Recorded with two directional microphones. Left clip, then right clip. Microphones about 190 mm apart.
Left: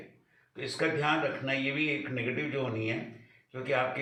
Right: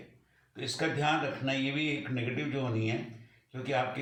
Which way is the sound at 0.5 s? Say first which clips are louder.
Left 2 dB; 20° right (ahead or behind).